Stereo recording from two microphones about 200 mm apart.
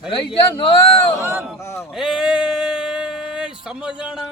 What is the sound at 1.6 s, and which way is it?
Speech, 15° left (ahead or behind).